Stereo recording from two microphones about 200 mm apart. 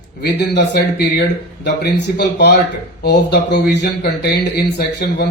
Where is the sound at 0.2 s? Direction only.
55° left (ahead or behind).